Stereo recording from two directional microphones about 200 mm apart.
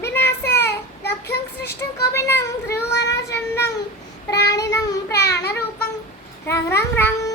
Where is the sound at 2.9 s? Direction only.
60° left (ahead or behind).